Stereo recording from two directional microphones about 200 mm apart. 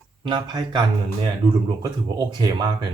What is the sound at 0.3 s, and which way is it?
Speech, 20° right (ahead or behind).